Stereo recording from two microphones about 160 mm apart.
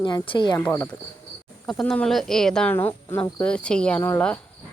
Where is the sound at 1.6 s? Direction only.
5° left (ahead or behind).